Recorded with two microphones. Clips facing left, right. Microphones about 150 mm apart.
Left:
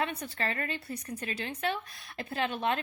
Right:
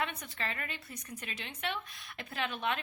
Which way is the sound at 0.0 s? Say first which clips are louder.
Left 4 dB; 35° left (ahead or behind).